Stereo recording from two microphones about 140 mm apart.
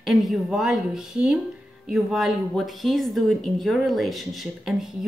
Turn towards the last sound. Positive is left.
turn(degrees=0)  # may be behind; listen again after turning